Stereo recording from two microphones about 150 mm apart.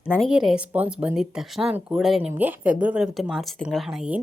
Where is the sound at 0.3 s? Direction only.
5° right (ahead or behind).